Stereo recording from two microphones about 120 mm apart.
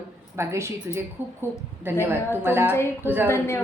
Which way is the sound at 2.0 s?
20° right (ahead or behind).